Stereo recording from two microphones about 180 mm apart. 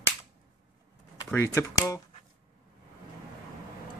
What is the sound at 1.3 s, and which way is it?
Speech, 15° left (ahead or behind).